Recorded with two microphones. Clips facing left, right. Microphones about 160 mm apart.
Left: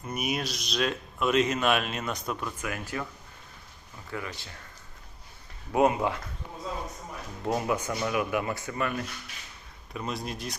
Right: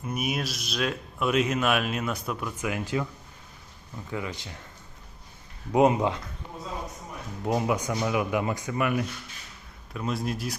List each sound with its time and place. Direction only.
0.1 s speech: centre (ahead or behind)
2.9 s speech: 15° right (ahead or behind)
4.1 s speech: 15° right (ahead or behind)
5.7 s speech: 20° right (ahead or behind)
7.4 s speech: 15° right (ahead or behind)
9.9 s speech: centre (ahead or behind)